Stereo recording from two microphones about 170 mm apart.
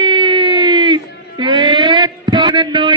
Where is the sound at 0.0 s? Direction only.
30° right (ahead or behind).